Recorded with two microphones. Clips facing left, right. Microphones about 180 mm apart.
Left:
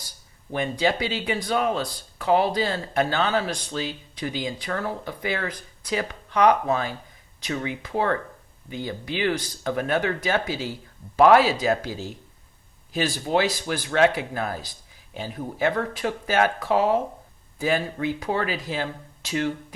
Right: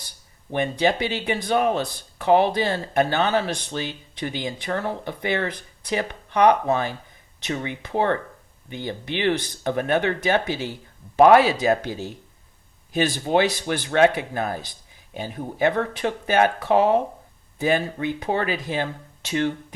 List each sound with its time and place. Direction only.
0.5 s speech: 20° right (ahead or behind)